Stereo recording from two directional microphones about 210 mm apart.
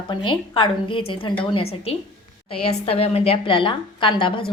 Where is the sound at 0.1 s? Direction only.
25° left (ahead or behind).